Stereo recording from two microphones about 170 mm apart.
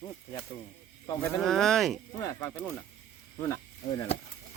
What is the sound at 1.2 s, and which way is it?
Speech, centre (ahead or behind).